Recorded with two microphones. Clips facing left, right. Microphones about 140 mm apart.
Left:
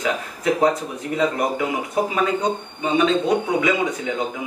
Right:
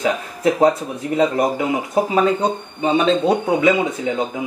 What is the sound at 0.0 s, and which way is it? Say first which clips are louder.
Speech: right 4 dB; 25° right (ahead or behind).